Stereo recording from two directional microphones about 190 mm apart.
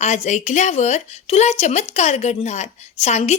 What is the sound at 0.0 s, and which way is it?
Speech, 40° left (ahead or behind).